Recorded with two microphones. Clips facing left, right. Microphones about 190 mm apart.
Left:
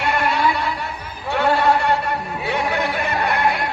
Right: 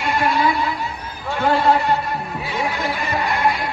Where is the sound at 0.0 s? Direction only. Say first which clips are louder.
Right 1 dB; 65° left (ahead or behind).